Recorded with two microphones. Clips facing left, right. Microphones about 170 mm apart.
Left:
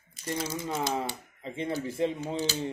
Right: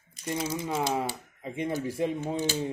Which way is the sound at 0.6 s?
10° right (ahead or behind).